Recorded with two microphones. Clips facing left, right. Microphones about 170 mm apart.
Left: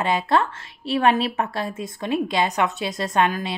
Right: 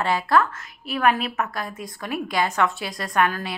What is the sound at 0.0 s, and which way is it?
A woman's voice, 25° left (ahead or behind).